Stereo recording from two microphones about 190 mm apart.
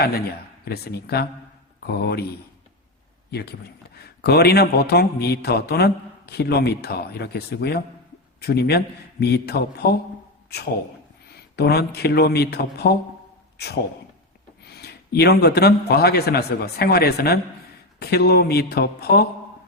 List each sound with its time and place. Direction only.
0.6 s a man's voice: 55° left (ahead or behind)
3.3 s a man's voice: 55° left (ahead or behind)
11.3 s a man's voice: 55° left (ahead or behind)
14.6 s a man's voice: 60° left (ahead or behind)